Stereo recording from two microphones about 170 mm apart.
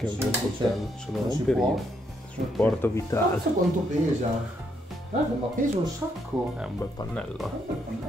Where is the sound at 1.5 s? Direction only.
5° left (ahead or behind).